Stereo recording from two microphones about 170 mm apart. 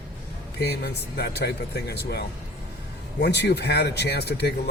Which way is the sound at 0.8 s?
70° left (ahead or behind).